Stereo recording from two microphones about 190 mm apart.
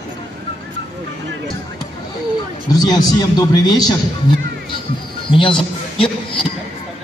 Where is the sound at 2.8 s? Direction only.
20° left (ahead or behind).